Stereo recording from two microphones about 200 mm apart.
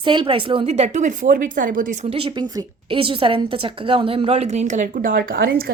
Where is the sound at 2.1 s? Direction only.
25° right (ahead or behind).